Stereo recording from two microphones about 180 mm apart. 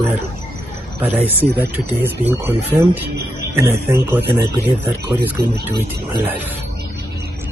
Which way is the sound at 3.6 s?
15° right (ahead or behind).